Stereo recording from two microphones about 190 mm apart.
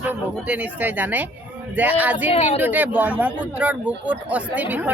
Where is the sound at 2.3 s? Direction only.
30° left (ahead or behind).